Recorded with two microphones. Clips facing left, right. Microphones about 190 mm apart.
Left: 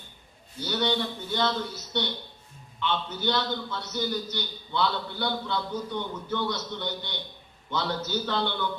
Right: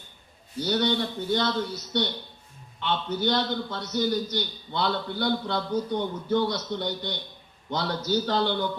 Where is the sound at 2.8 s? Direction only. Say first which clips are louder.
Right 2 dB; 40° right (ahead or behind).